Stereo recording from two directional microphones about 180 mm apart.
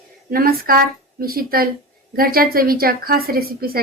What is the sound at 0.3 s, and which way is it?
A woman's voice, 55° right (ahead or behind).